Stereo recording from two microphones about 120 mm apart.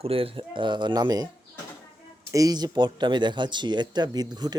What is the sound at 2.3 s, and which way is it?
Speech, 30° right (ahead or behind).